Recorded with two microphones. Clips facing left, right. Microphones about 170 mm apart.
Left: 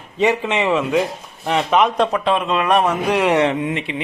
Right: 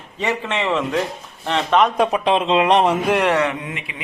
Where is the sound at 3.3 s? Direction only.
25° left (ahead or behind).